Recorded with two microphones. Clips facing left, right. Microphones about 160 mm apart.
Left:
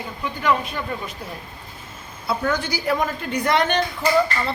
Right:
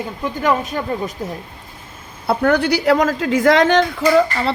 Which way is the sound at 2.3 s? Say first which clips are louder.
Right 8 dB; 65° right (ahead or behind).